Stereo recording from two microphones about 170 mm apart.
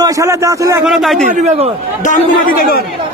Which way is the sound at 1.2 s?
40° right (ahead or behind).